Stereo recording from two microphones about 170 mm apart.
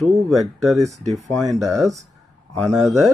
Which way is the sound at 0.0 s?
Centre (ahead or behind).